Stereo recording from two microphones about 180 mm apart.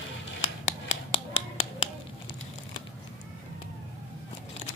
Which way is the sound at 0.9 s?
35° left (ahead or behind).